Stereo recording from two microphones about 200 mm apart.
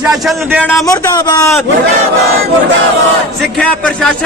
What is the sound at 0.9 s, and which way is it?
Speech, 20° left (ahead or behind).